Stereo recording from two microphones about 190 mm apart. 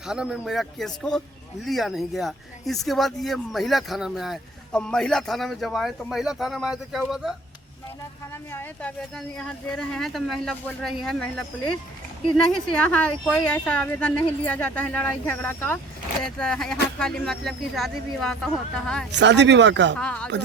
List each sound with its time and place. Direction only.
0.0 s speech: 5° right (ahead or behind)
8.3 s speech: 10° left (ahead or behind)
12.7 s a woman's voice: 5° left (ahead or behind)
19.1 s speech: 65° right (ahead or behind)
20.0 s speech: 5° left (ahead or behind)